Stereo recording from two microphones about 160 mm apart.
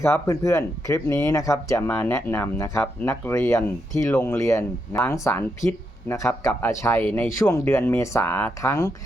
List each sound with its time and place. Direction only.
0.0 s speech: 20° left (ahead or behind)